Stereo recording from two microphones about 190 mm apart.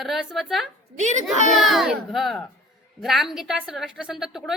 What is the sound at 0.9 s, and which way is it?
Speech, 40° right (ahead or behind).